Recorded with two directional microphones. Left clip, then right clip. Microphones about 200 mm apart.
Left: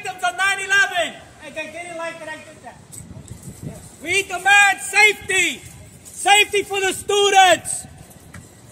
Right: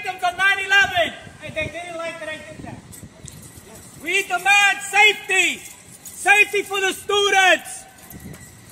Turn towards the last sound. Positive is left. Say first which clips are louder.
# left 2 dB
turn(degrees=20)  # may be behind; listen again after turning